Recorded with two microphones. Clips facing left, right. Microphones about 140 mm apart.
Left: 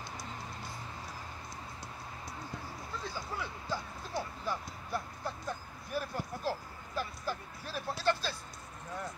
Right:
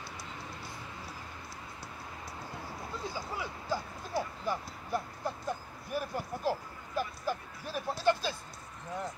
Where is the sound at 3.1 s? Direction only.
10° right (ahead or behind).